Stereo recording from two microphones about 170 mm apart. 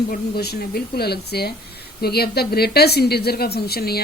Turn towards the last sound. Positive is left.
turn(degrees=65)  # may be behind; listen again after turning